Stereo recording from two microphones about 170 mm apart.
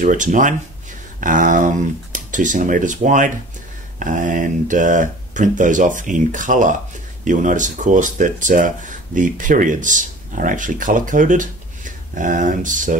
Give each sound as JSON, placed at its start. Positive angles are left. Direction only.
{"t": 0.0, "sound": "speech", "side_deg": -50}